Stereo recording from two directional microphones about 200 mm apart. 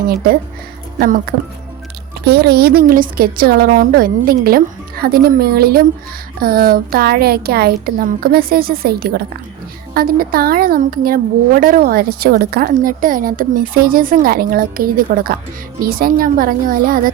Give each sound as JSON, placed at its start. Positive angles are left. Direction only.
{"t": 0.9, "sound": "speech", "side_deg": -45}
{"t": 2.2, "sound": "a woman's voice", "side_deg": -55}